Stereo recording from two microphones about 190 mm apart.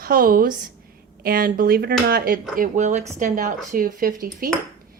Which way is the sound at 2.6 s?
40° right (ahead or behind).